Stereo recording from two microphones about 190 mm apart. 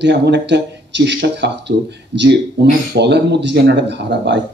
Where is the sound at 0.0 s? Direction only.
65° right (ahead or behind).